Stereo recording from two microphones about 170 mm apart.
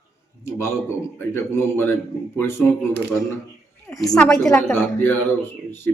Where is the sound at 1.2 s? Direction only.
15° left (ahead or behind).